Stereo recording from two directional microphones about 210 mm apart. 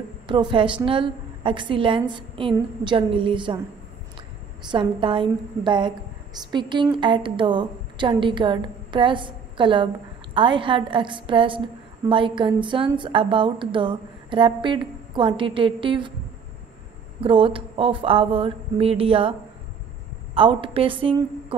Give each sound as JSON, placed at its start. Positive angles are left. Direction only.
{"t": 0.3, "sound": "a woman's voice", "side_deg": -20}
{"t": 4.6, "sound": "a woman's voice", "side_deg": -25}
{"t": 17.2, "sound": "a woman's voice", "side_deg": -25}
{"t": 20.3, "sound": "a woman's voice", "side_deg": -25}